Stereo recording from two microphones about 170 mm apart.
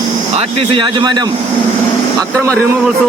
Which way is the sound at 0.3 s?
30° right (ahead or behind).